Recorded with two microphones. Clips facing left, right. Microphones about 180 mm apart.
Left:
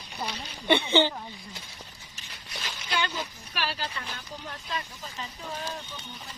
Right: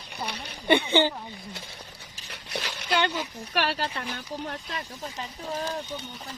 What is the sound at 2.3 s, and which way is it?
Dog, 70° right (ahead or behind).